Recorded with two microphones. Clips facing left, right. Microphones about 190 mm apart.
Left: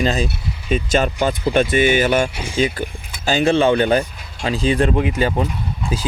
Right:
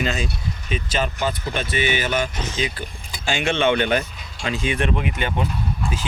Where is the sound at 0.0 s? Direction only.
35° left (ahead or behind).